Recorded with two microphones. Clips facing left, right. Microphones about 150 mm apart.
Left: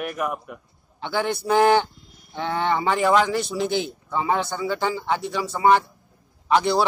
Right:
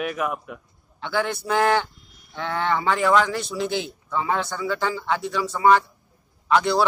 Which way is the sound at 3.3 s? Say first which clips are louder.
Left 2 dB; 5° left (ahead or behind).